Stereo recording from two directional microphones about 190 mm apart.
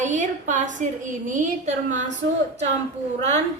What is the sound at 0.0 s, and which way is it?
A woman's voice, 40° right (ahead or behind).